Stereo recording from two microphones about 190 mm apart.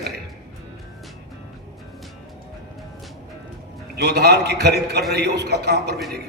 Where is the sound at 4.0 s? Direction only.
60° right (ahead or behind).